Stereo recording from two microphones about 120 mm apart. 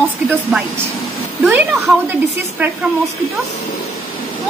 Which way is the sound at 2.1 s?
15° right (ahead or behind).